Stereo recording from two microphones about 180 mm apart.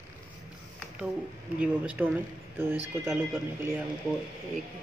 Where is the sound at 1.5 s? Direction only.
10° right (ahead or behind).